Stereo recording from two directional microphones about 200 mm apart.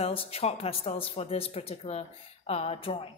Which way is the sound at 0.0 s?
30° left (ahead or behind).